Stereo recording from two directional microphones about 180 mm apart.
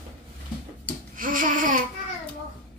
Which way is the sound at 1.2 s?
50° right (ahead or behind).